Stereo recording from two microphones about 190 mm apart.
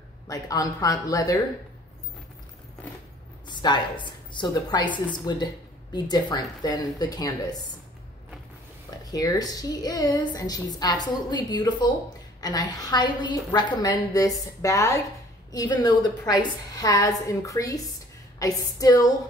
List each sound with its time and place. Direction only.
0.3 s a woman's voice: 20° left (ahead or behind)
3.4 s a woman's voice: 25° left (ahead or behind)
9.1 s a woman's voice: 20° left (ahead or behind)